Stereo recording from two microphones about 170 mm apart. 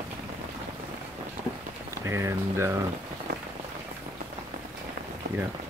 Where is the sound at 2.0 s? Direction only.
15° right (ahead or behind).